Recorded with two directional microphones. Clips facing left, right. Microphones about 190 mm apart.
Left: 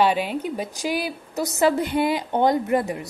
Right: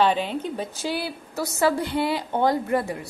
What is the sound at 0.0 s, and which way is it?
A woman's voice, 10° left (ahead or behind).